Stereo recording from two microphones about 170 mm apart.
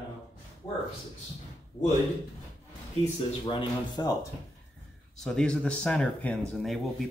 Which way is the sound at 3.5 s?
25° left (ahead or behind).